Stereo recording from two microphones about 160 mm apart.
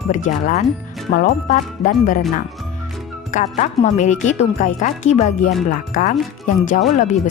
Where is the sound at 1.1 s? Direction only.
65° left (ahead or behind).